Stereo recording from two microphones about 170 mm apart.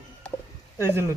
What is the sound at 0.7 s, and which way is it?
Speech, 15° right (ahead or behind).